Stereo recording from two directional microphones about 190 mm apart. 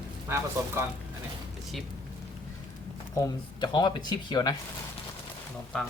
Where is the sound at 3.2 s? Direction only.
20° left (ahead or behind).